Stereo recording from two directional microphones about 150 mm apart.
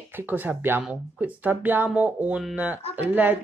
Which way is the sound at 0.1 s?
10° right (ahead or behind).